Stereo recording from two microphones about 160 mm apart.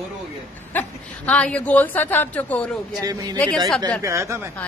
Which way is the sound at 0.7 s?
10° left (ahead or behind).